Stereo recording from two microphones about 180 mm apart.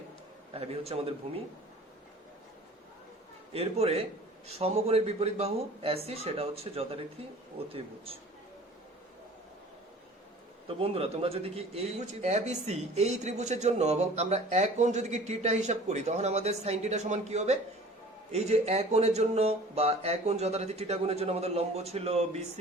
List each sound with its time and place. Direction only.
0.5 s speech: 35° right (ahead or behind)
3.5 s speech: 35° right (ahead or behind)
10.7 s speech: 30° right (ahead or behind)